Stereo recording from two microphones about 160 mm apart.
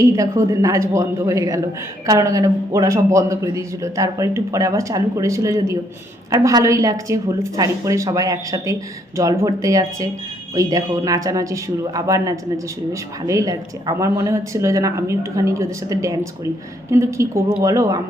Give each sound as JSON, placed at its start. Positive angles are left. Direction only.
{"t": 0.0, "sound": "a man's voice", "side_deg": -20}